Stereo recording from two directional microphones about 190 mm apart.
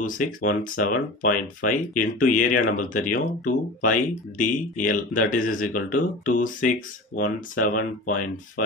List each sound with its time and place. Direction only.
0.0 s speech: 45° left (ahead or behind)